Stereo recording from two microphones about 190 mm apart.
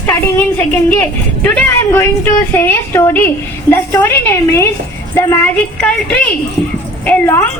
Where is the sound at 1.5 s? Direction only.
10° left (ahead or behind).